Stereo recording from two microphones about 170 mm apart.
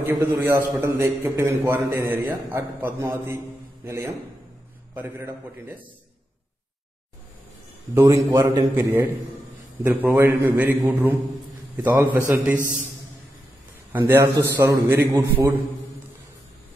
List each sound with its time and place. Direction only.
0.0 s a man's voice: 15° right (ahead or behind)
7.9 s a man's voice: 15° right (ahead or behind)
10.0 s a man's voice: 15° right (ahead or behind)
13.9 s a man's voice: 15° right (ahead or behind)